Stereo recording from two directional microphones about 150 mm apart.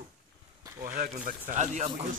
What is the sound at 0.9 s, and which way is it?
Speech, 65° right (ahead or behind).